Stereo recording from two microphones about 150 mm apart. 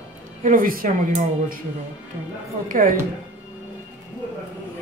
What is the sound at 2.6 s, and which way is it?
Speech, 65° right (ahead or behind).